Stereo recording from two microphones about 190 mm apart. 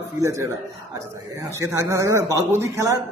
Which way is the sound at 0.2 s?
15° right (ahead or behind).